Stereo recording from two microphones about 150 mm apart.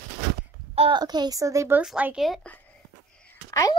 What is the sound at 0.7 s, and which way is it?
A child's voice, 30° right (ahead or behind).